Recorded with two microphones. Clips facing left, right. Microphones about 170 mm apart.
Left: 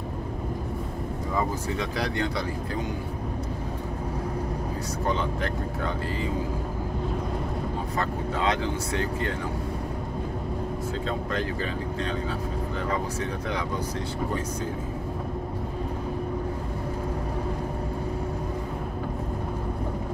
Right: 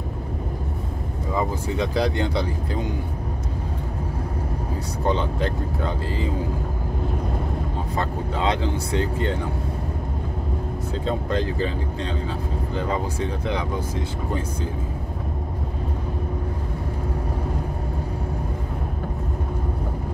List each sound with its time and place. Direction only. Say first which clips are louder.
1.8 s speech: right 7 dB; 30° right (ahead or behind)
5.0 s speech: right 5 dB; 25° right (ahead or behind)
8.0 s speech: right 2 dB; 25° right (ahead or behind)
11.1 s speech: right 7 dB; 30° right (ahead or behind)